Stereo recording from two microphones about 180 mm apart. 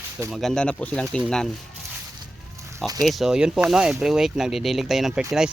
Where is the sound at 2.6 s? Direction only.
15° right (ahead or behind).